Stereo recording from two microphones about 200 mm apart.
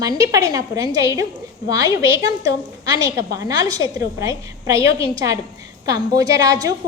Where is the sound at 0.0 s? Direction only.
20° right (ahead or behind).